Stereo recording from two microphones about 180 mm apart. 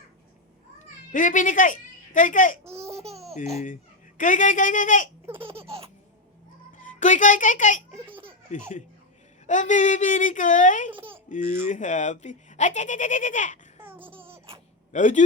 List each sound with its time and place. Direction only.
1.1 s a woman's voice: 45° left (ahead or behind)
2.7 s a sound: 35° right (ahead or behind)
4.2 s speech: 45° left (ahead or behind)
5.3 s laughter: 30° right (ahead or behind)
6.7 s a child's voice: 45° left (ahead or behind)
7.9 s a sound: 10° right (ahead or behind)
8.5 s speech: 40° left (ahead or behind)
11.4 s speech: 15° right (ahead or behind)
11.7 s speech: 45° left (ahead or behind)
14.9 s speech: 45° left (ahead or behind)